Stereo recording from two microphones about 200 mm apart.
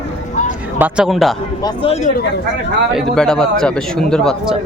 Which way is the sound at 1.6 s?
30° left (ahead or behind).